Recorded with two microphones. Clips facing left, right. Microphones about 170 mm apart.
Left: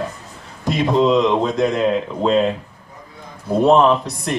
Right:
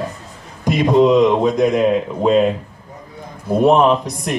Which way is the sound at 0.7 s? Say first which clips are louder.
Right 3 dB; 15° right (ahead or behind).